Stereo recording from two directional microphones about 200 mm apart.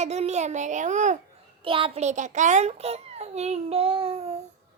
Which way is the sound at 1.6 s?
25° right (ahead or behind).